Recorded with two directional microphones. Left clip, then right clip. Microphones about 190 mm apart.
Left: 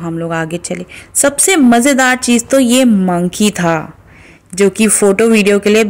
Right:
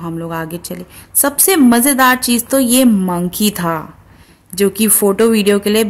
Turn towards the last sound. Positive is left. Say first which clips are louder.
# left 3 dB
turn(degrees=10)  # may be behind; listen again after turning